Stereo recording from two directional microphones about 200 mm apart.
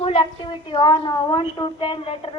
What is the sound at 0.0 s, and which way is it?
A woman's voice, 25° left (ahead or behind).